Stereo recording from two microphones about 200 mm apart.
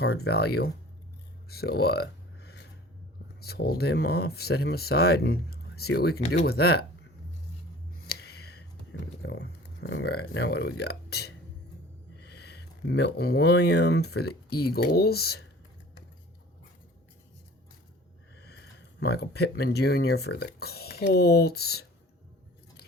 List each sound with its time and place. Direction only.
0.0 s speech: 55° left (ahead or behind)
1.5 s a sound: 50° left (ahead or behind)
3.4 s speech: 55° left (ahead or behind)
8.0 s a sound: 50° left (ahead or behind)
9.2 s speech: 60° left (ahead or behind)
18.3 s speech: 55° left (ahead or behind)